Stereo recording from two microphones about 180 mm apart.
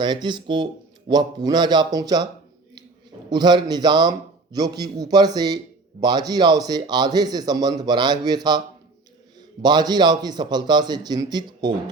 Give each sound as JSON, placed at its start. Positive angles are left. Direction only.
{"t": 0.0, "sound": "a man's voice", "side_deg": -25}
{"t": 3.2, "sound": "a man's voice", "side_deg": -25}